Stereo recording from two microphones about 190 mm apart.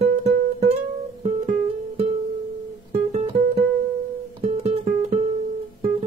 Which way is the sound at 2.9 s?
35° right (ahead or behind).